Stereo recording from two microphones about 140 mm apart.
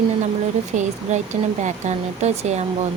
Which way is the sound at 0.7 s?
55° right (ahead or behind).